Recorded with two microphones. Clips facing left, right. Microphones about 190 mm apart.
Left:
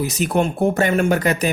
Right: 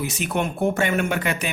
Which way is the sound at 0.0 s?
40° left (ahead or behind).